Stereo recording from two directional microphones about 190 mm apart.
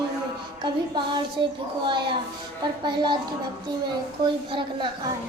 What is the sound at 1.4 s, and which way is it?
Speech, 25° right (ahead or behind).